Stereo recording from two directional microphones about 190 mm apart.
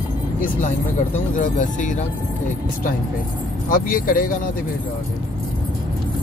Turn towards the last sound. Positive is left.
turn(degrees=50)  # may be behind; listen again after turning